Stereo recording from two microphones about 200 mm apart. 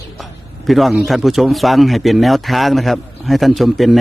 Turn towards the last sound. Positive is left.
turn(degrees=0)  # may be behind; listen again after turning